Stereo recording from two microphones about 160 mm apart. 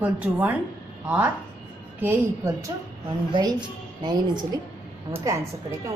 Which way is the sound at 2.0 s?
15° right (ahead or behind).